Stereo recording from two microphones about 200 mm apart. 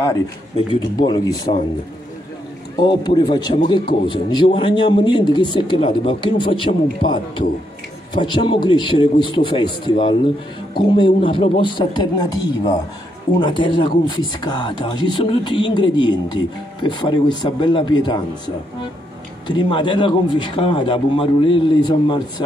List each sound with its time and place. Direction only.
0.7 s speech: 20° left (ahead or behind)
2.8 s speech: 25° left (ahead or behind)
19.4 s speech: 25° left (ahead or behind)